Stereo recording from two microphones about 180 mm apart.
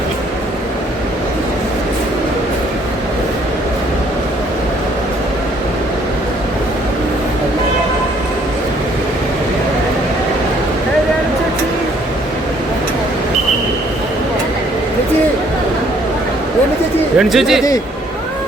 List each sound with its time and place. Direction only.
17.2 s speech: centre (ahead or behind)